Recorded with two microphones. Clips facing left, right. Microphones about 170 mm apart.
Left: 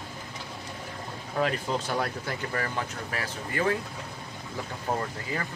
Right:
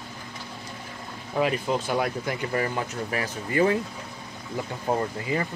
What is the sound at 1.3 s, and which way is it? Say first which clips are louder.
Speech: right 3 dB; 10° right (ahead or behind).